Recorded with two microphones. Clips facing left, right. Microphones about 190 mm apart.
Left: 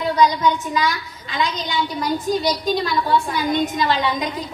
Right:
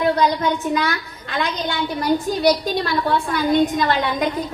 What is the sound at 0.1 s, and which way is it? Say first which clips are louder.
A woman's voice: left 1 dB; 55° right (ahead or behind).